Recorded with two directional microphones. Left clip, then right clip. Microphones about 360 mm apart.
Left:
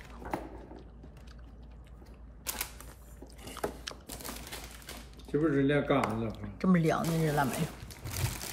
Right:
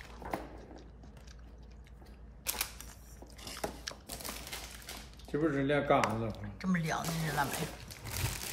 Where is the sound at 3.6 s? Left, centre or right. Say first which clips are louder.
Left 3 dB; centre.